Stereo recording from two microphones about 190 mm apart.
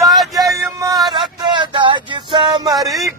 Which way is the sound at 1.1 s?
25° right (ahead or behind).